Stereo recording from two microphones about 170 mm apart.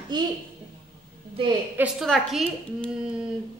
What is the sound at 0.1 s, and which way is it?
Speech, 25° right (ahead or behind).